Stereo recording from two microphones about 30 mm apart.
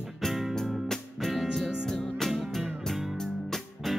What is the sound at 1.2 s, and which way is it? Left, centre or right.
Music, centre.